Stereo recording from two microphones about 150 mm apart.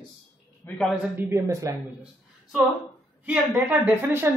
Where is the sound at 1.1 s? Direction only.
15° right (ahead or behind).